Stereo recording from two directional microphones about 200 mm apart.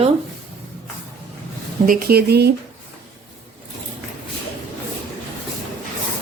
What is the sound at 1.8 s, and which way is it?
Speech, 45° right (ahead or behind).